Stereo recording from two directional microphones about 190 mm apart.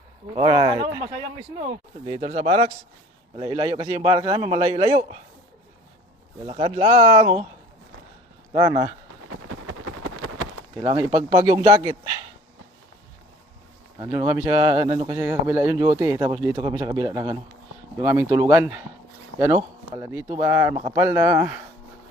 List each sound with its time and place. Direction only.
0.3 s speech: 25° right (ahead or behind)
6.4 s speech: 30° right (ahead or behind)
8.5 s speech: 20° right (ahead or behind)
10.8 s speech: 20° right (ahead or behind)
14.0 s speech: 15° right (ahead or behind)